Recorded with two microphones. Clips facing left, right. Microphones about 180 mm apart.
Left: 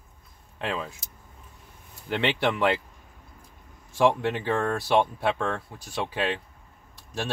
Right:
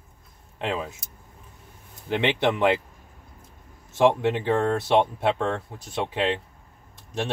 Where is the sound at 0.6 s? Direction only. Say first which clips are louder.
Right 2 dB; 20° right (ahead or behind).